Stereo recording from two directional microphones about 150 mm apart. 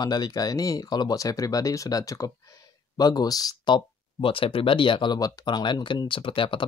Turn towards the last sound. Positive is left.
turn(degrees=35)  # may be behind; listen again after turning